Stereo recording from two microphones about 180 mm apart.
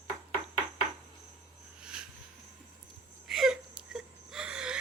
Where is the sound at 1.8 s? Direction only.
5° right (ahead or behind).